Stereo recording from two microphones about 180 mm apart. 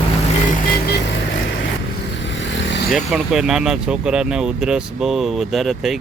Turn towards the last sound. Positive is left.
turn(degrees=0)  # may be behind; listen again after turning